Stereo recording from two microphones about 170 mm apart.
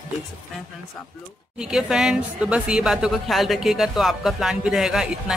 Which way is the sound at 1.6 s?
5° right (ahead or behind).